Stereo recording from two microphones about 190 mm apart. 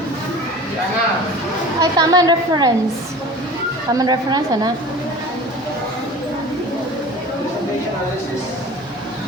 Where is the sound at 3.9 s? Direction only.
20° right (ahead or behind).